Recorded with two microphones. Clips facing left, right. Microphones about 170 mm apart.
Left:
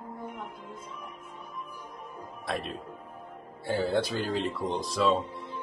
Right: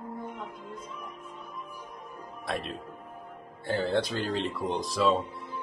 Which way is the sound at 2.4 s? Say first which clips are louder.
Even; centre (ahead or behind).